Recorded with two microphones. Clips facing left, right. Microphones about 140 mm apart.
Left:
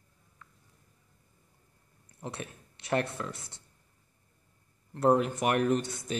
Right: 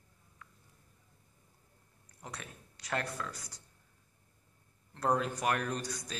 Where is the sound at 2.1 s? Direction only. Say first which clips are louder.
Left 7 dB; 25° left (ahead or behind).